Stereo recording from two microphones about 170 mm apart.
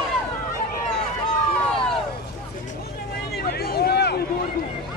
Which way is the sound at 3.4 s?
65° left (ahead or behind).